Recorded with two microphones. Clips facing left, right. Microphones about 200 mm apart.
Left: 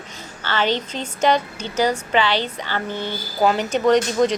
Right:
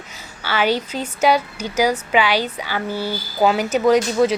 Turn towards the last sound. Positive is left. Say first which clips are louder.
# right 1 dB
turn(degrees=-10)  # may be behind; listen again after turning